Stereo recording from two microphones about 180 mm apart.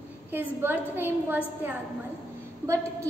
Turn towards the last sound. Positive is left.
turn(degrees=-15)  # may be behind; listen again after turning